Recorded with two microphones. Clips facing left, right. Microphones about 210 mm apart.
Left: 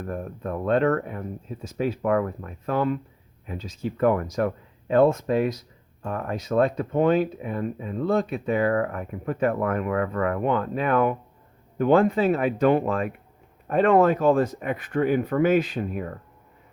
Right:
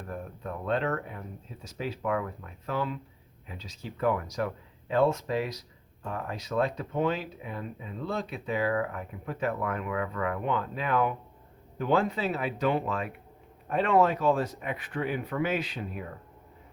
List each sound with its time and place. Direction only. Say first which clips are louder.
0.0 s speech: left 7 dB; 50° left (ahead or behind)